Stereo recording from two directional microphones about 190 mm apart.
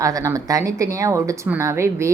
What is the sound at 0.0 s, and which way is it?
Speech, 15° right (ahead or behind).